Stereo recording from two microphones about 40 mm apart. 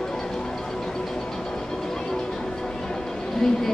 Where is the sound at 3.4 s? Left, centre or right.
Centre.